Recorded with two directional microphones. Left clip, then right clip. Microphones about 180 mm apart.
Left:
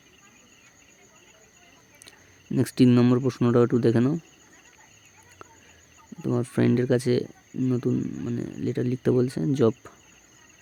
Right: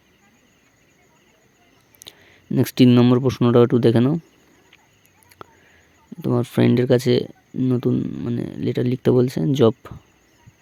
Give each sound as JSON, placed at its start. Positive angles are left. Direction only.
{"t": 2.0, "sound": "speech", "side_deg": -30}
{"t": 5.4, "sound": "fowl", "side_deg": -30}
{"t": 6.2, "sound": "speech", "side_deg": -30}